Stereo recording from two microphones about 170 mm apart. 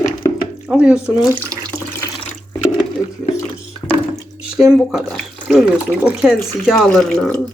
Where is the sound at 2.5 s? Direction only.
25° left (ahead or behind).